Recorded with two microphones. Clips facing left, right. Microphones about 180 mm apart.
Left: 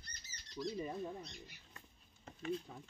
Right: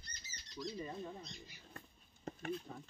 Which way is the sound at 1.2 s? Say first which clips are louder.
Left 1 dB; 60° left (ahead or behind).